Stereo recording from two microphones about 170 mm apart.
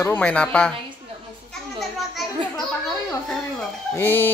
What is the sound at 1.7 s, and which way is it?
Children playing, centre (ahead or behind).